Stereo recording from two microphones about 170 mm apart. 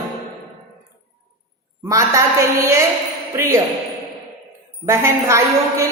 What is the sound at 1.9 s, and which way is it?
A woman's voice, 15° right (ahead or behind).